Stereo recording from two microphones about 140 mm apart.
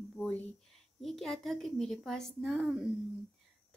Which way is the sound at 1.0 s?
Centre (ahead or behind).